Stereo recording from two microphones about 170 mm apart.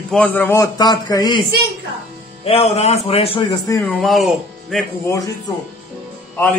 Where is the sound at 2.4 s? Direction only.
35° left (ahead or behind).